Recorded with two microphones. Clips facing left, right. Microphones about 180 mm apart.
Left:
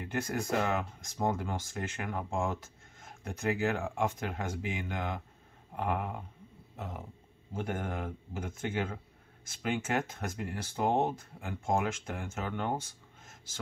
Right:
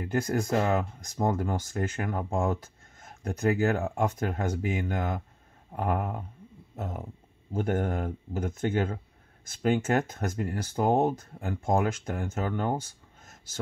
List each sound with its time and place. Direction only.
0.0 s speech: 40° right (ahead or behind)
7.5 s speech: 45° right (ahead or behind)